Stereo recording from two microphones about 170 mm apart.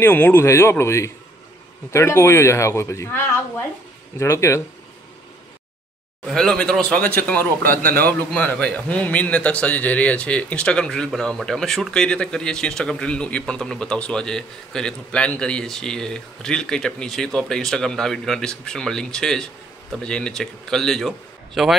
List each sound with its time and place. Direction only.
0.0 s speech: 10° left (ahead or behind)
4.2 s speech: 15° left (ahead or behind)
6.2 s a man's voice: 5° left (ahead or behind)